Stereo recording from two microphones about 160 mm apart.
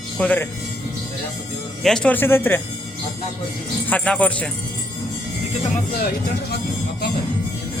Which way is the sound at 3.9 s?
10° left (ahead or behind).